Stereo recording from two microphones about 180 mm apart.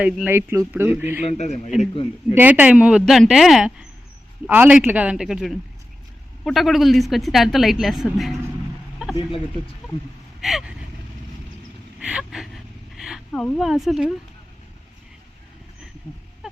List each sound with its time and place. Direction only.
0.0 s speech: 10° right (ahead or behind)
1.2 s a man's voice: 40° left (ahead or behind)
2.3 s a woman's voice: 10° right (ahead or behind)
10.4 s a woman's voice: 5° right (ahead or behind)
11.9 s a woman's voice: 5° right (ahead or behind)
16.1 s a sound: 30° left (ahead or behind)